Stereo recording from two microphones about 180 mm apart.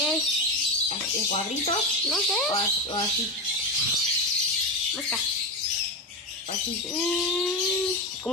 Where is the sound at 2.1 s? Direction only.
Centre (ahead or behind).